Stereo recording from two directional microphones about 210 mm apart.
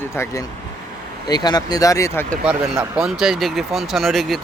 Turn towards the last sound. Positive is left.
turn(degrees=0)  # may be behind; listen again after turning